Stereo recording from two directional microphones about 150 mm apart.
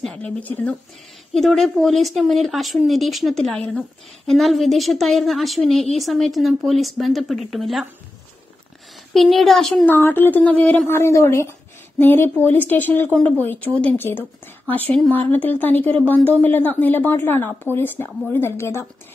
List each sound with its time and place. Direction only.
0.0 s a woman's voice: 5° left (ahead or behind)
9.1 s a woman's voice: centre (ahead or behind)
9.8 s speech: 15° left (ahead or behind)